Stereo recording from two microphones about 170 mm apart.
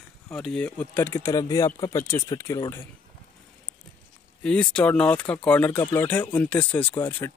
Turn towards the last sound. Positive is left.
turn(degrees=10)  # may be behind; listen again after turning